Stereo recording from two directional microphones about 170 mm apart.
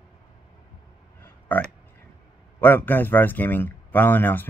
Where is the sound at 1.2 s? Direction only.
10° left (ahead or behind).